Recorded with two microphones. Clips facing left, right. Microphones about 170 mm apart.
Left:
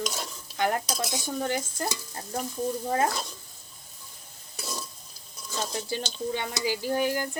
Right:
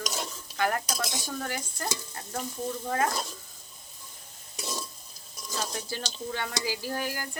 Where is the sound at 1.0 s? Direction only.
15° left (ahead or behind).